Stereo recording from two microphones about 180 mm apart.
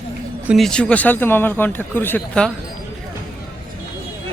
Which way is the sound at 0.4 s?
Centre (ahead or behind).